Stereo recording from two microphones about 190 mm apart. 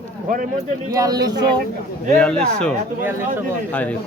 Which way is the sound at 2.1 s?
5° left (ahead or behind).